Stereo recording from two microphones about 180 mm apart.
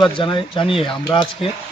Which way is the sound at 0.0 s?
25° left (ahead or behind).